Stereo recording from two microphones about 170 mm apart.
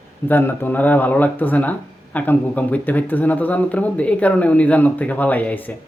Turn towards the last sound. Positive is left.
turn(degrees=10)  # may be behind; listen again after turning